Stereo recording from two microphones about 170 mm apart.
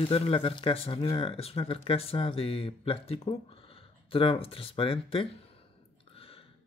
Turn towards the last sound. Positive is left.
turn(degrees=30)  # may be behind; listen again after turning